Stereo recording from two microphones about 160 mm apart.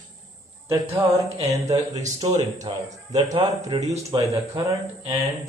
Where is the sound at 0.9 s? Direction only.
20° right (ahead or behind).